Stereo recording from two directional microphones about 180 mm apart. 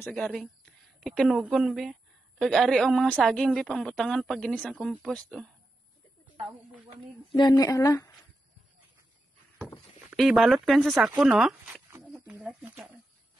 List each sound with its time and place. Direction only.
0.0 s a woman's voice: centre (ahead or behind)
7.3 s speech: 20° left (ahead or behind)
10.1 s a woman's voice: centre (ahead or behind)